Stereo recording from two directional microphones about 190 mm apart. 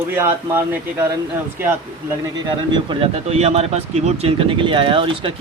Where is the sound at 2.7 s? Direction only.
25° right (ahead or behind).